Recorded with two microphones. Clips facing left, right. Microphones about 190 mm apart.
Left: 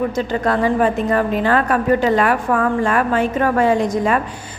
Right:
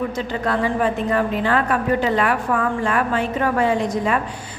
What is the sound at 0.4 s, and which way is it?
A woman's voice, 45° left (ahead or behind).